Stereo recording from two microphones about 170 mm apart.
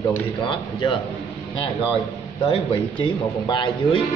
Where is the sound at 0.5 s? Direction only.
30° left (ahead or behind).